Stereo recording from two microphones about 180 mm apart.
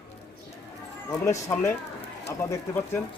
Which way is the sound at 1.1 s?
15° left (ahead or behind).